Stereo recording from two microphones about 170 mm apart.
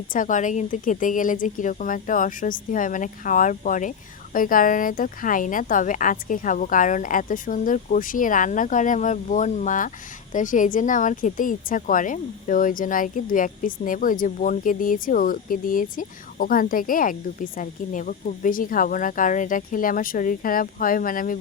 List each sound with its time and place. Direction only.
0.1 s speech: 50° left (ahead or behind)